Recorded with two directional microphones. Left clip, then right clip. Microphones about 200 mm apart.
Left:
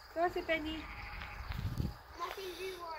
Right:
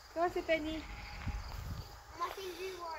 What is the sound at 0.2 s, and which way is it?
Speech, 50° right (ahead or behind).